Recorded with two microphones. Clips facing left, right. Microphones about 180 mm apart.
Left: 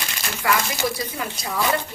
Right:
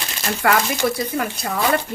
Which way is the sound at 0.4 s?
60° right (ahead or behind).